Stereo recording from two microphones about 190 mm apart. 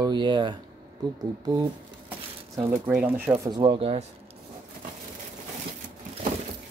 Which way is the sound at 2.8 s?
10° right (ahead or behind).